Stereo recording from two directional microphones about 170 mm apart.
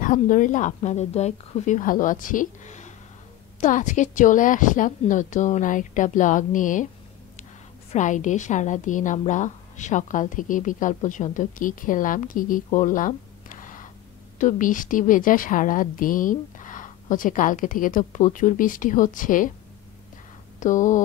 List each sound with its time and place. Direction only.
0.0 s a woman's voice: 50° left (ahead or behind)
7.9 s a woman's voice: 45° left (ahead or behind)
20.6 s a woman's voice: 50° left (ahead or behind)